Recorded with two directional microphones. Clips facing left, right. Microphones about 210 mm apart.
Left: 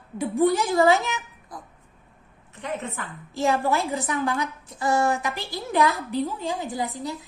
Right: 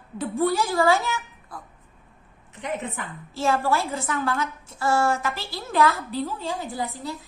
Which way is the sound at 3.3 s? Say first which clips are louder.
Even; 15° left (ahead or behind).